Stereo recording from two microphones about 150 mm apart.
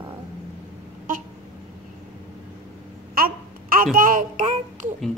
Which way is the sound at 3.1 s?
75° right (ahead or behind).